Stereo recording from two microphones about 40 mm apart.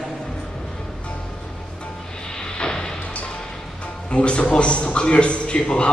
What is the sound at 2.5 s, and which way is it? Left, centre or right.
Music, centre.